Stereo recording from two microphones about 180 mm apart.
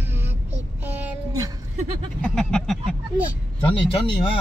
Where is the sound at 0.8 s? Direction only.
15° right (ahead or behind).